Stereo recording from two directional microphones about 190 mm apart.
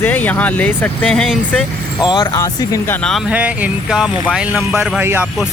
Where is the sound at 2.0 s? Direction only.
20° left (ahead or behind).